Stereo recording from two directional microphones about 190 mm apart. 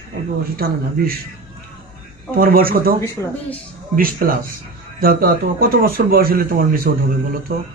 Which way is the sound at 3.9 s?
50° right (ahead or behind).